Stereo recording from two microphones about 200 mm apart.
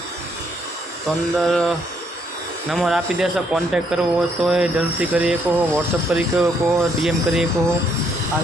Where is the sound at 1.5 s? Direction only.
Centre (ahead or behind).